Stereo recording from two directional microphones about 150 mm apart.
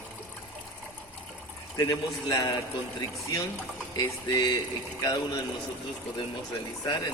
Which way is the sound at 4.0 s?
25° left (ahead or behind).